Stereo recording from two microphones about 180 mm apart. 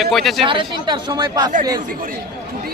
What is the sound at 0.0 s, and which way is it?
Speech, centre (ahead or behind).